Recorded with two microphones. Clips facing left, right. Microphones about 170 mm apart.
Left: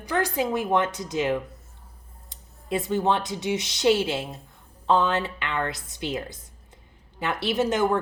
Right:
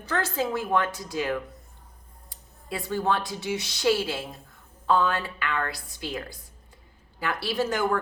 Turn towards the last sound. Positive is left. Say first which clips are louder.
# left 3 dB
turn(degrees=20)  # may be behind; listen again after turning